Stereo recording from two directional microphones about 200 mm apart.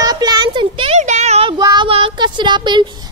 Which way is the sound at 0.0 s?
20° right (ahead or behind).